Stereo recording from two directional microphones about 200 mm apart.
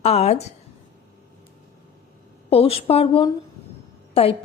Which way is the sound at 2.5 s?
30° left (ahead or behind).